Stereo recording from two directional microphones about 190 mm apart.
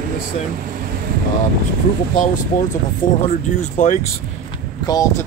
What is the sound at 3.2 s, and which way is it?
Speech, 40° left (ahead or behind).